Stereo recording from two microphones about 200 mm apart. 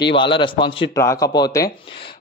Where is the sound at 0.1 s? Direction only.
25° left (ahead or behind).